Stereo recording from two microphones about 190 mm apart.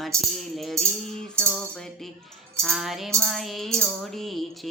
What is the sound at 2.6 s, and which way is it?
Music, centre (ahead or behind).